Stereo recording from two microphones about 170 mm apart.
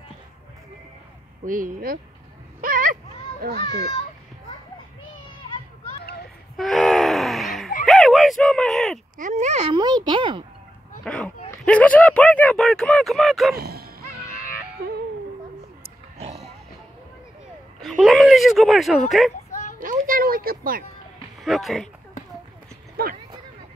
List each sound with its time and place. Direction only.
1.4 s speech: 55° right (ahead or behind)
2.6 s a sound: 55° right (ahead or behind)
6.5 s a sound: centre (ahead or behind)
9.2 s speech: 45° right (ahead or behind)
10.0 s a child's voice: 30° right (ahead or behind)
11.1 s speech: 5° left (ahead or behind)
13.6 s music: 65° right (ahead or behind)
17.8 s speech: centre (ahead or behind)
19.8 s music: 55° right (ahead or behind)
21.4 s speech: centre (ahead or behind)
23.0 s speech: 65° right (ahead or behind)